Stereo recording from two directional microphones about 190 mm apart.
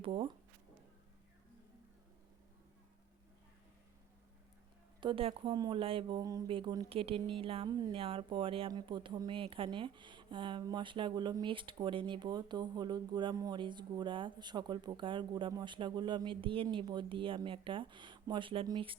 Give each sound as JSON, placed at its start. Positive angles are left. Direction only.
{"t": 0.0, "sound": "speech", "side_deg": -25}
{"t": 4.9, "sound": "speech", "side_deg": -25}